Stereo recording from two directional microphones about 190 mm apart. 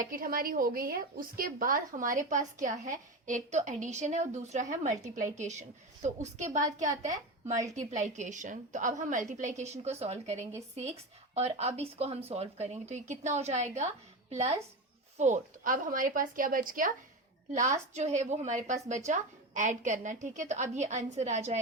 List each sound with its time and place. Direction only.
0.1 s a woman's voice: 50° right (ahead or behind)